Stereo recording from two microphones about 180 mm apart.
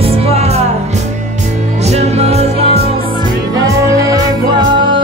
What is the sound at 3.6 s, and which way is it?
Music, 20° right (ahead or behind).